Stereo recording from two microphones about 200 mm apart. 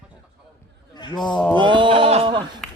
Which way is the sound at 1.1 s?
5° left (ahead or behind).